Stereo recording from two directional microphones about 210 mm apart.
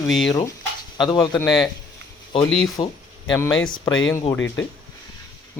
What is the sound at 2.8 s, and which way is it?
Speech, 25° left (ahead or behind).